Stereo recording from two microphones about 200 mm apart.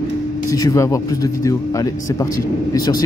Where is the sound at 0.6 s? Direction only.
15° left (ahead or behind).